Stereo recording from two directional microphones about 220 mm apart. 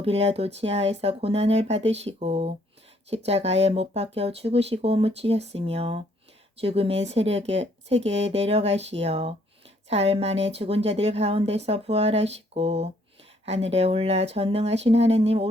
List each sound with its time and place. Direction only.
0.0 s a woman's voice: 30° right (ahead or behind)